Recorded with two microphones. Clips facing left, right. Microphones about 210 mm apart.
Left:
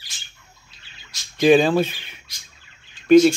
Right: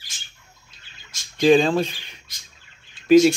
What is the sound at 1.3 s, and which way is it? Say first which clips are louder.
Speech: left 1 dB; 5° left (ahead or behind).